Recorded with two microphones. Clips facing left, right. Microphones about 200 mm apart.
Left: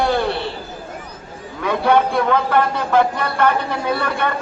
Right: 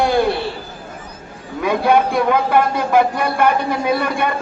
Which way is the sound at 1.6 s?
10° right (ahead or behind).